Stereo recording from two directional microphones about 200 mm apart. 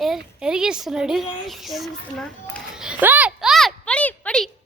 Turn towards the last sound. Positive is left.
turn(degrees=5)  # may be behind; listen again after turning